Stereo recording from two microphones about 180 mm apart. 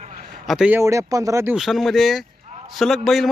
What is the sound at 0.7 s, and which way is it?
Speech, 15° right (ahead or behind).